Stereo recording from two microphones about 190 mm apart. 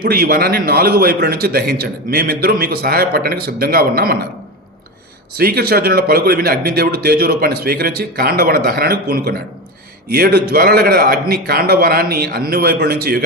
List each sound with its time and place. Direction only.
0.0 s a man's voice: 55° right (ahead or behind)
5.3 s a man's voice: 55° right (ahead or behind)